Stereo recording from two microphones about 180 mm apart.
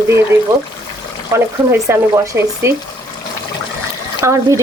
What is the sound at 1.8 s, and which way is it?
Speech, 15° right (ahead or behind).